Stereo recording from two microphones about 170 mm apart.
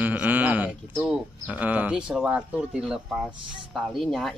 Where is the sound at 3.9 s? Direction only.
Centre (ahead or behind).